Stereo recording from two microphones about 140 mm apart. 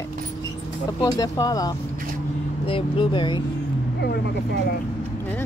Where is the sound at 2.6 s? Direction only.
40° left (ahead or behind).